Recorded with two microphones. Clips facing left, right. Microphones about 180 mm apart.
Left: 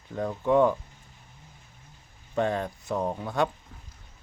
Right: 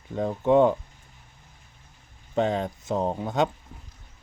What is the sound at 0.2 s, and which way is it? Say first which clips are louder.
Speech: right 3 dB; 20° right (ahead or behind).